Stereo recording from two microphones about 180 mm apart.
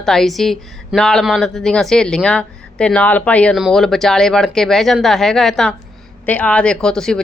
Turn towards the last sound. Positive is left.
turn(degrees=5)  # may be behind; listen again after turning